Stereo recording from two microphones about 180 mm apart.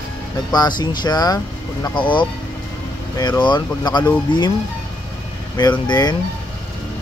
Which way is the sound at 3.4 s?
25° left (ahead or behind).